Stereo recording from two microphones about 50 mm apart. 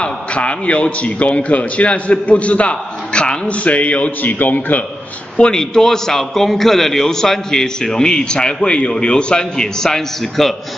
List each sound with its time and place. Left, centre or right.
0.0 s a man's voice: left
5.4 s a man's voice: centre